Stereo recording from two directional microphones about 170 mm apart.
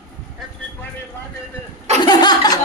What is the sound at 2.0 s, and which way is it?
Laughter, 25° left (ahead or behind).